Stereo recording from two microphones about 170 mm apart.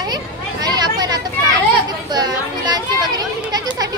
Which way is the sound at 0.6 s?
25° right (ahead or behind).